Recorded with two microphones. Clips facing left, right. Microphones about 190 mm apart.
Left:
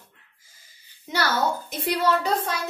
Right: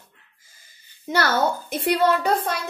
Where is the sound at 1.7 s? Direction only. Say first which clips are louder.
Right 4 dB; 60° right (ahead or behind).